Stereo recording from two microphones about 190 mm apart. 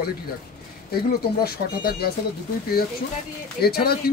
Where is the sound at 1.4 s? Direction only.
55° left (ahead or behind).